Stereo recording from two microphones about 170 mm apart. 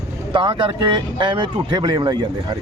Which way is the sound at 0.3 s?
30° right (ahead or behind).